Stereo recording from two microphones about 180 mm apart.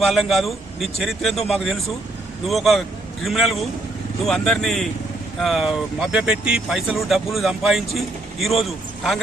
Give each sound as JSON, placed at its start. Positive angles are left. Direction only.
{"t": 0.0, "sound": "speech", "side_deg": 0}